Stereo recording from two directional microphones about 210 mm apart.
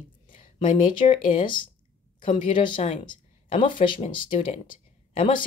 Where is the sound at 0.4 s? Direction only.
25° left (ahead or behind).